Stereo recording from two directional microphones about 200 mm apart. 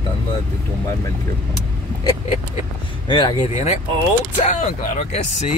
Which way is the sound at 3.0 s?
25° left (ahead or behind).